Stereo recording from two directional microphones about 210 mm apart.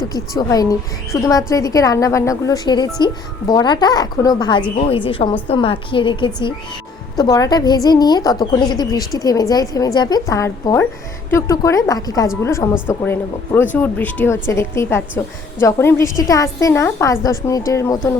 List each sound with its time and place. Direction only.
0.1 s a woman's voice: 15° left (ahead or behind)